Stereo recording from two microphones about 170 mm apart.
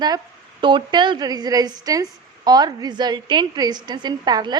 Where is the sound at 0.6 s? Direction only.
25° right (ahead or behind).